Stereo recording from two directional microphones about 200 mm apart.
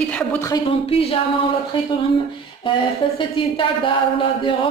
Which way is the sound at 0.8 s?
30° left (ahead or behind).